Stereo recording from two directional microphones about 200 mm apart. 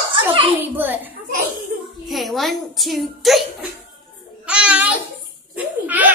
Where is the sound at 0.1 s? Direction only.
25° right (ahead or behind).